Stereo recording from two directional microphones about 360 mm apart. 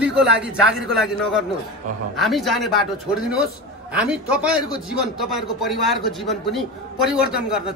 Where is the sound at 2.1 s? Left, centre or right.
Centre.